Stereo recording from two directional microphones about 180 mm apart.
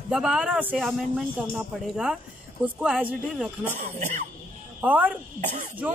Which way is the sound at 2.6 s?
5° right (ahead or behind).